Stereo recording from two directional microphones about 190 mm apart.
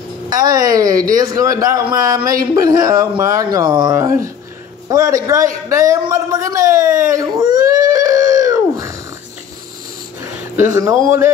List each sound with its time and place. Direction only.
0.3 s speech: 20° right (ahead or behind)
7.2 s a sound: 20° right (ahead or behind)
10.6 s speech: 15° right (ahead or behind)